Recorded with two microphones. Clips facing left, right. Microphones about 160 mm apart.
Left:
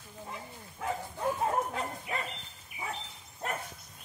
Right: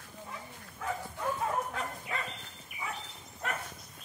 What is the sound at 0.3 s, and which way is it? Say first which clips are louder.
Bow-wow: left 3 dB; 25° left (ahead or behind).